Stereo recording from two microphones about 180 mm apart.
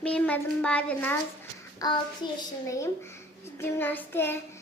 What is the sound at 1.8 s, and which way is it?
Child singing, 20° left (ahead or behind).